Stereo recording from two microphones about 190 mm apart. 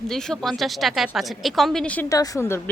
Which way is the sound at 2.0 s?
20° left (ahead or behind).